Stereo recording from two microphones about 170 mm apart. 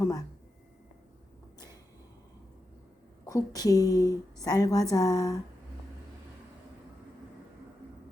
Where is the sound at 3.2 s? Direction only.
20° left (ahead or behind).